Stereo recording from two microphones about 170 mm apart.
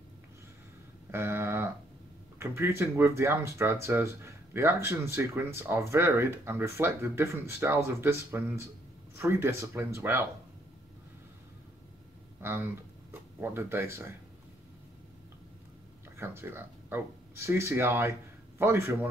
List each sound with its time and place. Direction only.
1.1 s a sound: 15° right (ahead or behind)
2.3 s speech: 15° right (ahead or behind)
12.4 s speech: 15° right (ahead or behind)
16.2 s speech: 15° right (ahead or behind)